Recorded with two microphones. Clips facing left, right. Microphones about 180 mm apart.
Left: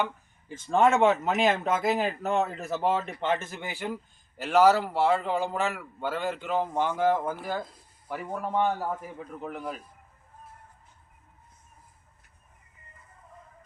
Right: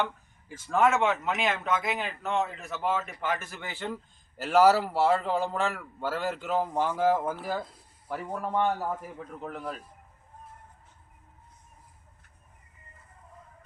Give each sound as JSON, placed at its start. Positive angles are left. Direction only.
{"t": 0.6, "sound": "speech", "side_deg": 30}
{"t": 4.4, "sound": "a man's voice", "side_deg": -5}